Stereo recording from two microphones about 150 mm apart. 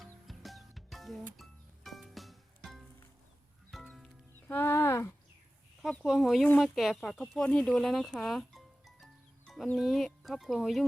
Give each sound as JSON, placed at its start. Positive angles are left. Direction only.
{"t": 0.0, "sound": "music", "side_deg": 0}
{"t": 4.4, "sound": "speech", "side_deg": 15}
{"t": 5.8, "sound": "speech", "side_deg": 0}